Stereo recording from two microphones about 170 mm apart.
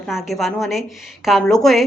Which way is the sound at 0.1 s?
Centre (ahead or behind).